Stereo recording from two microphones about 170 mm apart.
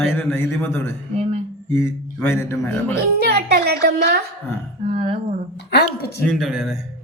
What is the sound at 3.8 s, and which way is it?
Speech, 70° right (ahead or behind).